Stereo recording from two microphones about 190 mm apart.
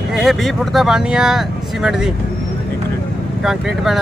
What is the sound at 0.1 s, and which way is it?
Speech, centre (ahead or behind).